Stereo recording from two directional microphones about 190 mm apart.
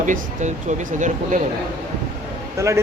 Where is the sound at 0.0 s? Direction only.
40° right (ahead or behind).